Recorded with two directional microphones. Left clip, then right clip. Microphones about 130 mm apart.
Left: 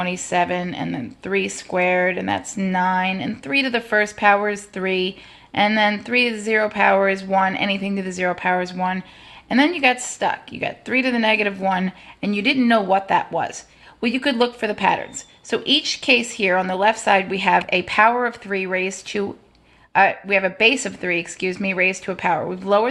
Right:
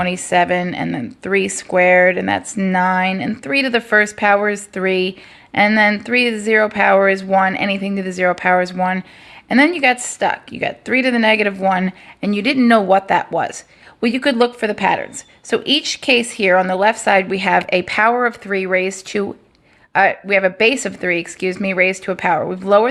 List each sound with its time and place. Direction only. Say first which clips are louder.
0.0 s speech: right 5 dB; 45° right (ahead or behind)